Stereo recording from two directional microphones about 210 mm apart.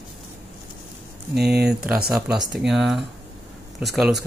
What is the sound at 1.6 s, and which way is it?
Speech, 5° right (ahead or behind).